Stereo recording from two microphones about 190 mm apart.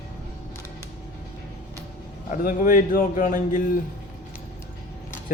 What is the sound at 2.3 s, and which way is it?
Speech, 45° left (ahead or behind).